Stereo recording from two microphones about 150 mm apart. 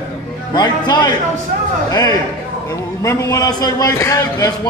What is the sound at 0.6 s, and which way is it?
A man's voice, 30° left (ahead or behind).